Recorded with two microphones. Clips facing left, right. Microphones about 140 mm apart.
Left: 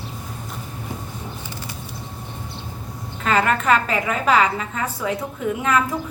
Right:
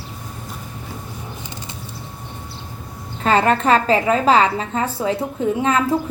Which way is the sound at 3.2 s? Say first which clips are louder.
Right 3 dB; 30° right (ahead or behind).